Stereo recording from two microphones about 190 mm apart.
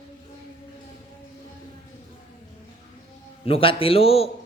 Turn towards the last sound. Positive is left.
turn(degrees=30)  # may be behind; listen again after turning